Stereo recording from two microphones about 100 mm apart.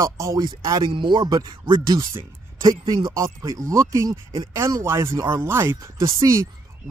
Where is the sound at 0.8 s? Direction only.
55° right (ahead or behind).